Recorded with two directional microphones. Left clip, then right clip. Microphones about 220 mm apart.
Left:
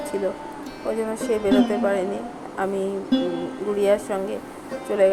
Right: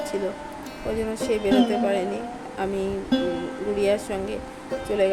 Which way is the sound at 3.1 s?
Centre (ahead or behind).